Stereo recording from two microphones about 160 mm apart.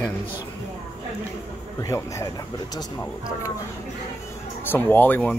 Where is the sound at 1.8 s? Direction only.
20° left (ahead or behind).